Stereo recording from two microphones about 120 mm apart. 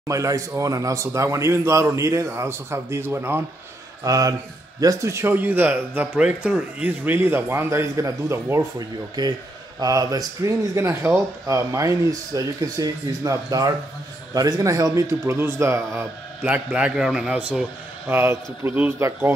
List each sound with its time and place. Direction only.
0.1 s speech: 25° right (ahead or behind)
16.5 s a man's voice: 10° right (ahead or behind)